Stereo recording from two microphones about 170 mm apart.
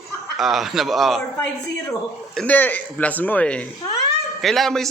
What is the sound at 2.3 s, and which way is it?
A man's voice, 5° left (ahead or behind).